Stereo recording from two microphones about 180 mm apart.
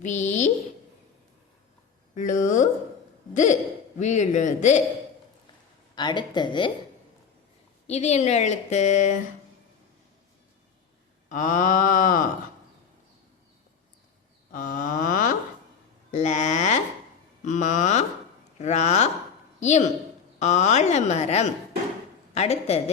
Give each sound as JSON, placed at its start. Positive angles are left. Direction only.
{"t": 0.0, "sound": "a woman's voice", "side_deg": 40}
{"t": 2.1, "sound": "mantra", "side_deg": 45}
{"t": 4.0, "sound": "a woman's voice", "side_deg": 40}
{"t": 5.9, "sound": "speech", "side_deg": 25}
{"t": 7.9, "sound": "a woman's voice", "side_deg": 40}
{"t": 11.3, "sound": "mantra", "side_deg": 45}
{"t": 14.5, "sound": "a sound", "side_deg": 45}
{"t": 16.1, "sound": "a woman's voice", "side_deg": 40}